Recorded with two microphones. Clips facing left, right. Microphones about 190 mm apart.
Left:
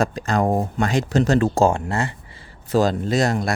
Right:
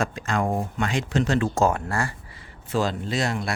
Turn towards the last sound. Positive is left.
turn(degrees=40)  # may be behind; listen again after turning